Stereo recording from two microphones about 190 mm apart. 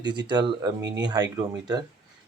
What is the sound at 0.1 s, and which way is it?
Speech, 20° right (ahead or behind).